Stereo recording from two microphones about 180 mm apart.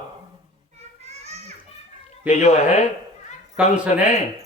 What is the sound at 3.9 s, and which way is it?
Speech, 40° left (ahead or behind).